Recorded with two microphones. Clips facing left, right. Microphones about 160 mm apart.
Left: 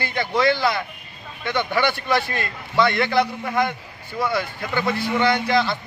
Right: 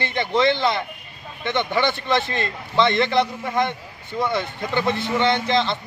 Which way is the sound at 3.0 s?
5° left (ahead or behind).